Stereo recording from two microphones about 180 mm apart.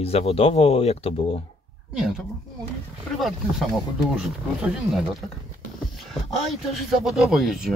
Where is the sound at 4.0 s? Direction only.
5° right (ahead or behind).